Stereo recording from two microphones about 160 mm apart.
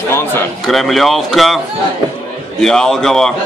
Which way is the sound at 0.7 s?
Centre (ahead or behind).